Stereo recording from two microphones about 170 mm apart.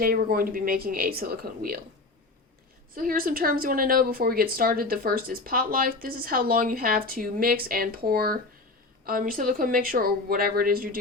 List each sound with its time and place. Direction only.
0.0 s a woman's voice: 60° right (ahead or behind)
2.9 s a woman's voice: 55° right (ahead or behind)